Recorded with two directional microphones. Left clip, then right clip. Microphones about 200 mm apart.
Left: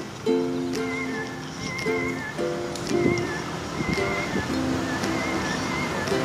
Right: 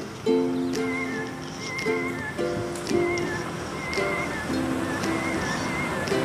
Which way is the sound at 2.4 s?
Centre (ahead or behind).